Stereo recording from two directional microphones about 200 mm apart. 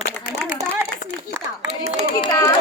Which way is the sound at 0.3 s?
5° left (ahead or behind).